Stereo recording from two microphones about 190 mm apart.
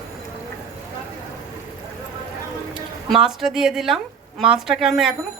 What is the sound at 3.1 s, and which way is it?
A woman's voice, centre (ahead or behind).